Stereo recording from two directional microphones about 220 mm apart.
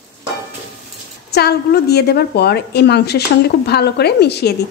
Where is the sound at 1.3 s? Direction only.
45° left (ahead or behind).